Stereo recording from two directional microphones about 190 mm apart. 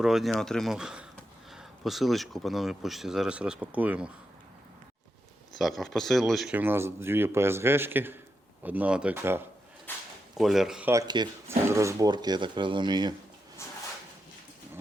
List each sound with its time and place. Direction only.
0.0 s speech: centre (ahead or behind)
5.5 s speech: centre (ahead or behind)
9.9 s speech: 10° left (ahead or behind)
10.3 s speech: centre (ahead or behind)
11.1 s speech: 20° right (ahead or behind)
13.6 s drawer open or close: 15° left (ahead or behind)